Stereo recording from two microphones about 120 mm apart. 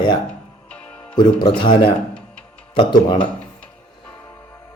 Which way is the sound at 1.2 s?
40° left (ahead or behind).